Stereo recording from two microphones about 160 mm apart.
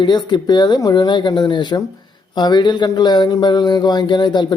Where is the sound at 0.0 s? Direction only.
25° left (ahead or behind).